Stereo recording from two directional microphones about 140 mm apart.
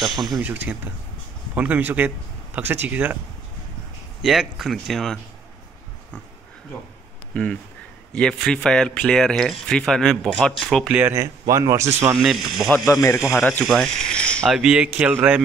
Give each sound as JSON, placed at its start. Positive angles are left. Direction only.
{"t": 0.0, "sound": "speech", "side_deg": 0}
{"t": 0.4, "sound": "a man's voice", "side_deg": -10}
{"t": 4.2, "sound": "speech", "side_deg": 0}
{"t": 8.1, "sound": "speech", "side_deg": 5}
{"t": 11.0, "sound": "speech", "side_deg": -15}
{"t": 12.2, "sound": "speech", "side_deg": 0}
{"t": 13.3, "sound": "speech", "side_deg": 10}
{"t": 14.6, "sound": "a man's voice", "side_deg": -5}